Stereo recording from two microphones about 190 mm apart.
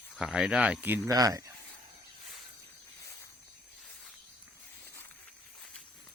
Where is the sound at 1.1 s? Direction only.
20° right (ahead or behind).